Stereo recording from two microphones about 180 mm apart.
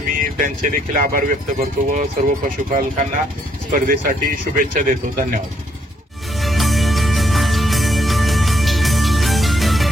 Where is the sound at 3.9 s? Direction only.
50° right (ahead or behind).